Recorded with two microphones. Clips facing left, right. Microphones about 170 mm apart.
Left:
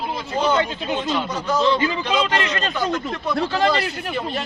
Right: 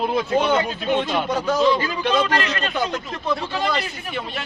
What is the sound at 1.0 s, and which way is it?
Speech, 60° right (ahead or behind).